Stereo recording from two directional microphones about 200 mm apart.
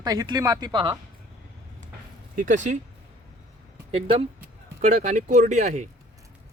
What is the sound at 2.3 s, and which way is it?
Speech, 40° right (ahead or behind).